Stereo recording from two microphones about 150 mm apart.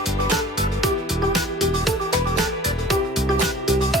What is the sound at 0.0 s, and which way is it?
Music, centre (ahead or behind).